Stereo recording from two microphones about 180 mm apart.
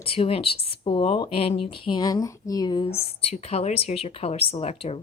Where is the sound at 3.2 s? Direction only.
35° left (ahead or behind).